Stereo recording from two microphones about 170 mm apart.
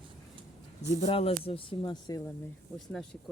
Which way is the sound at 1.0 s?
35° left (ahead or behind).